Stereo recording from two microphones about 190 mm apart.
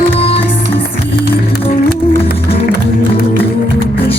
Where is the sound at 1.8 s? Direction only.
50° left (ahead or behind).